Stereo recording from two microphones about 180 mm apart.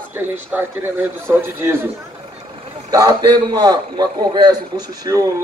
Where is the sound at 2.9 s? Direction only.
20° right (ahead or behind).